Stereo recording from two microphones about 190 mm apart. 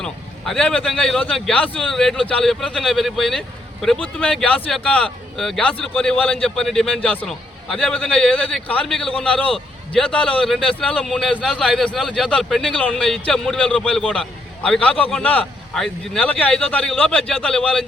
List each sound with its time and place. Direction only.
0.0 s a man's voice: 5° left (ahead or behind)